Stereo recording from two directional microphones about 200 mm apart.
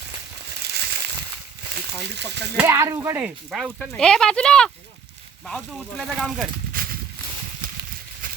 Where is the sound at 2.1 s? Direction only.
60° right (ahead or behind).